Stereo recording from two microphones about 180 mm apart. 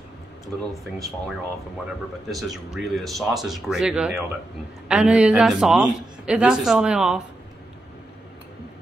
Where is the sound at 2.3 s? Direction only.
Centre (ahead or behind).